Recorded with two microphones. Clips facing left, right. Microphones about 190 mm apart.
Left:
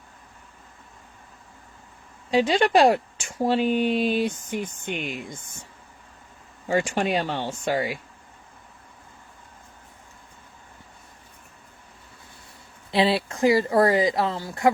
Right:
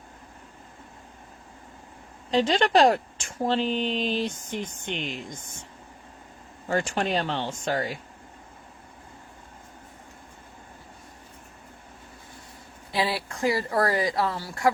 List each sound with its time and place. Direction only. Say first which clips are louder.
2.3 s speech: left 2 dB; 10° left (ahead or behind)
6.7 s speech: left 3 dB; 10° left (ahead or behind)
12.9 s speech: left 6 dB; 25° left (ahead or behind)